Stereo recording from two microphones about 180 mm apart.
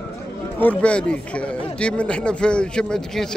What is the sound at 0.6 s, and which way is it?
Speech, 10° left (ahead or behind).